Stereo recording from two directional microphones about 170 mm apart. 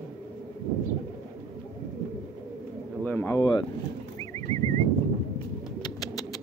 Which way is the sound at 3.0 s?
10° left (ahead or behind).